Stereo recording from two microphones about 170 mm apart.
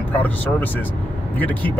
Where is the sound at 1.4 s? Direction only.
10° left (ahead or behind).